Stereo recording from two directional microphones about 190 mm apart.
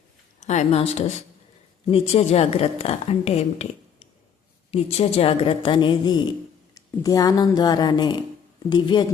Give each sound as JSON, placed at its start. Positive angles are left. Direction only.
{"t": 0.3, "sound": "a woman's voice", "side_deg": 40}